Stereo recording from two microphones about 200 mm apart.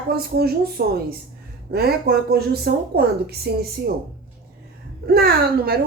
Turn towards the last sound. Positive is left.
turn(degrees=-50)  # may be behind; listen again after turning